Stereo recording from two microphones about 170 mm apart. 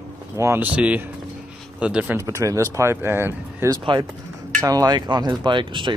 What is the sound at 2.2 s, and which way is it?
Speech, 20° right (ahead or behind).